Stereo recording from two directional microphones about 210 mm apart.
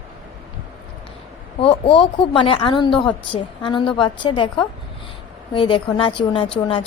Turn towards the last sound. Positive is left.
turn(degrees=25)  # may be behind; listen again after turning